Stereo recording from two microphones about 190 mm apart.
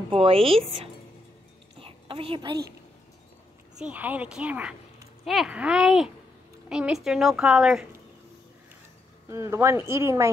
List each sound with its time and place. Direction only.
0.1 s speech: 30° right (ahead or behind)
1.8 s a sound: 30° right (ahead or behind)
3.7 s a woman's voice: 5° right (ahead or behind)
9.3 s a woman's voice: 15° right (ahead or behind)